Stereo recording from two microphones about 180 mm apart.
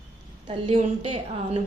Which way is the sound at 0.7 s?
30° right (ahead or behind).